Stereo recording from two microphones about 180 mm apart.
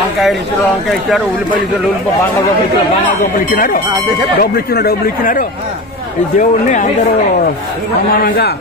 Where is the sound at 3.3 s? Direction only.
50° left (ahead or behind).